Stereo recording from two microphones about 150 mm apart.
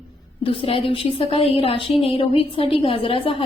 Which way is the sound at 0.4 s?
35° left (ahead or behind).